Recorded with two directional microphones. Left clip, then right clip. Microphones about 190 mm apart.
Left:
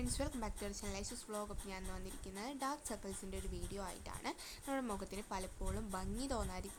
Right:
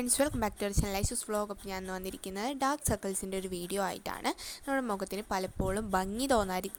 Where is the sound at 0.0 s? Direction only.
40° right (ahead or behind).